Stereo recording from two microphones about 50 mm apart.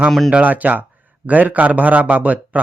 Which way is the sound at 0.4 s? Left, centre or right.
Right.